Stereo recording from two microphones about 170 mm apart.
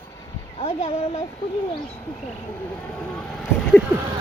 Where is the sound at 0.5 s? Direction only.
35° left (ahead or behind).